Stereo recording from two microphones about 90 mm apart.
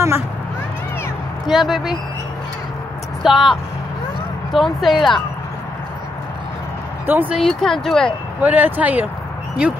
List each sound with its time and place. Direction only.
1.5 s speech: centre (ahead or behind)
3.2 s speech: centre (ahead or behind)
7.1 s speech: 20° right (ahead or behind)
7.3 s speech: 5° left (ahead or behind)
8.4 s speech: 20° right (ahead or behind)